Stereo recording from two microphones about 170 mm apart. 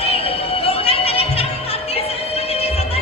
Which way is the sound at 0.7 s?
35° left (ahead or behind).